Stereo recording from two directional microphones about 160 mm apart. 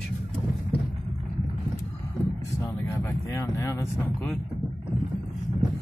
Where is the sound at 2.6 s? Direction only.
20° left (ahead or behind).